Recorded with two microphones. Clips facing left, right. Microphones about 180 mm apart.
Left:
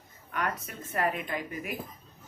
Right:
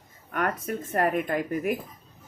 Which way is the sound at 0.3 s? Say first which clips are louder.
Right 6 dB; 50° right (ahead or behind).